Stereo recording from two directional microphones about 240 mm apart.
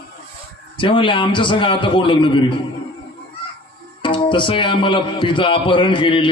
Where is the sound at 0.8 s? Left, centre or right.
Left.